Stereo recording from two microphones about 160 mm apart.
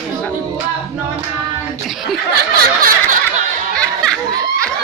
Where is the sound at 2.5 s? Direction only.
60° right (ahead or behind).